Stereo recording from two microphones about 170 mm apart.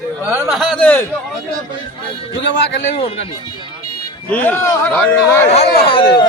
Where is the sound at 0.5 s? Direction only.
Centre (ahead or behind).